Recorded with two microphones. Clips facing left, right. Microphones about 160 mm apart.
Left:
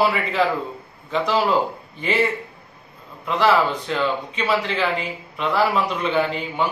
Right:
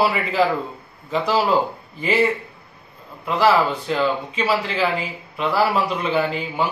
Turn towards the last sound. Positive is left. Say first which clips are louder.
# even
turn(degrees=-5)  # may be behind; listen again after turning